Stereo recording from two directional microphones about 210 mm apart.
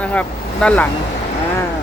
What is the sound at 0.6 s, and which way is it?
Speech, 5° left (ahead or behind).